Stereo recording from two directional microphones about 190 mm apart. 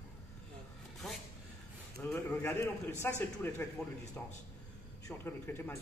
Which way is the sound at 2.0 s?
10° left (ahead or behind).